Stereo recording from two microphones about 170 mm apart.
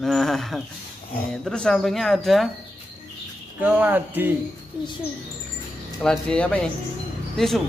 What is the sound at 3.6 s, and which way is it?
Speech, 10° right (ahead or behind).